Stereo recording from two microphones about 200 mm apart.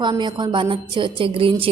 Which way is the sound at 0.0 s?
20° right (ahead or behind).